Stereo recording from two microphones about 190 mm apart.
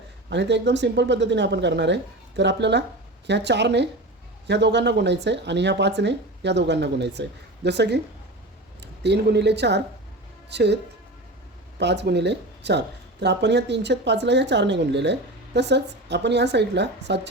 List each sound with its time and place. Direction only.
0.3 s speech: 65° right (ahead or behind)
11.8 s speech: 65° right (ahead or behind)